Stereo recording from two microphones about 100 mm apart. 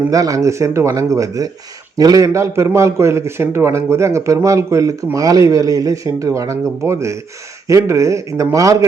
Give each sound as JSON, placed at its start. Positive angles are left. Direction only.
{"t": 0.1, "sound": "a man's voice", "side_deg": -35}